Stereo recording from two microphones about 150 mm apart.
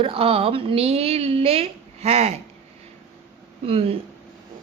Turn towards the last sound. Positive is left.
turn(degrees=-40)  # may be behind; listen again after turning